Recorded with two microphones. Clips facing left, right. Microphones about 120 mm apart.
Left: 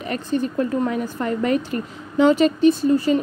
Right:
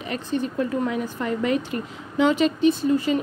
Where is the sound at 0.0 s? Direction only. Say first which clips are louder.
Left 3 dB; 45° left (ahead or behind).